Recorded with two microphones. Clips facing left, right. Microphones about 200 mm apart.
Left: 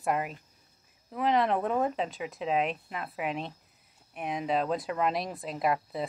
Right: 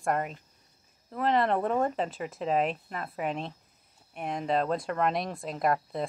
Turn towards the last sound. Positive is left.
turn(degrees=0)  # may be behind; listen again after turning